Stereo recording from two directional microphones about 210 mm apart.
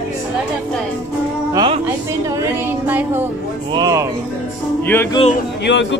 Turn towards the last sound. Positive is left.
turn(degrees=60)  # may be behind; listen again after turning